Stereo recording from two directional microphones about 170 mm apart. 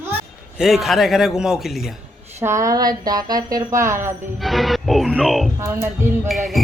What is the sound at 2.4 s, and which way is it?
Speech, 15° right (ahead or behind).